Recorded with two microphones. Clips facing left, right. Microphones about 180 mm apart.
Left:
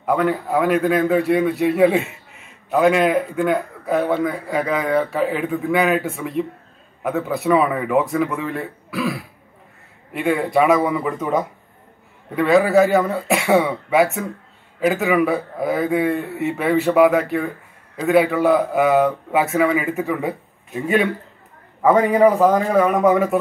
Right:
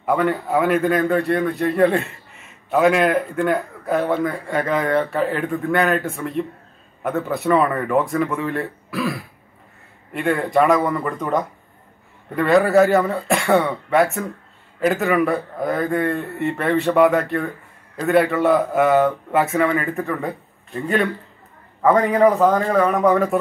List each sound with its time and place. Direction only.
0.0 s a man's voice: centre (ahead or behind)